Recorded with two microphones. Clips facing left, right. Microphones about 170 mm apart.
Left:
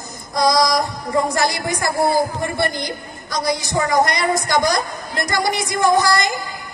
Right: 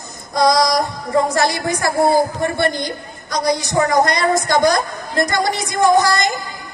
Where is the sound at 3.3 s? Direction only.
20° right (ahead or behind).